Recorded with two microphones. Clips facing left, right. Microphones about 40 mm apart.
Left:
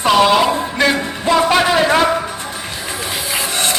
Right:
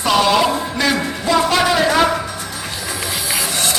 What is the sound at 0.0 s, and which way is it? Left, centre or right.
Music, centre.